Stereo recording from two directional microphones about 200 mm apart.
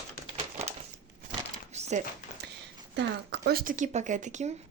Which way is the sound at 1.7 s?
35° right (ahead or behind).